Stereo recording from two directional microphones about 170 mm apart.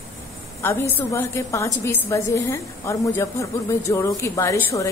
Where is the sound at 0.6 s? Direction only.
15° left (ahead or behind).